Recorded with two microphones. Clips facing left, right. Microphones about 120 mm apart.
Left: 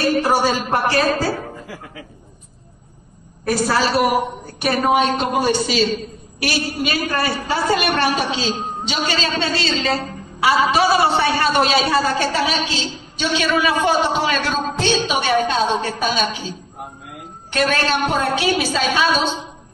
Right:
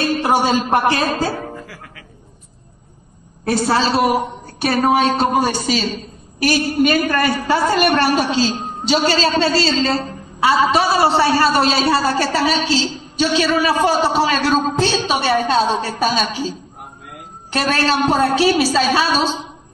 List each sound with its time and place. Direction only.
0.2 s a woman's voice: 20° right (ahead or behind)
3.4 s a woman's voice: 25° right (ahead or behind)